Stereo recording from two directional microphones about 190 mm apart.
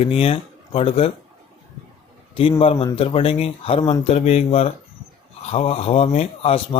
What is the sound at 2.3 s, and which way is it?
Speech, 25° left (ahead or behind).